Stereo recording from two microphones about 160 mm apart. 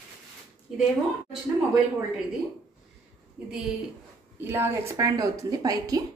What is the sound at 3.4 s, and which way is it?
A woman's voice, 5° right (ahead or behind).